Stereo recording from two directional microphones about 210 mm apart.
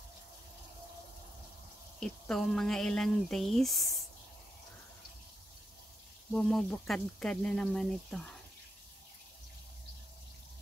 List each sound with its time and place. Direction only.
2.0 s speech: 5° left (ahead or behind)
6.3 s speech: centre (ahead or behind)